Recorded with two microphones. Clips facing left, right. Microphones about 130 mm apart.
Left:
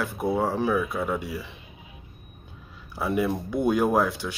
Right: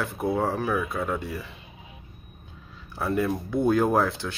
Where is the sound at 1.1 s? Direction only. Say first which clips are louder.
Left 1 dB; 5° left (ahead or behind).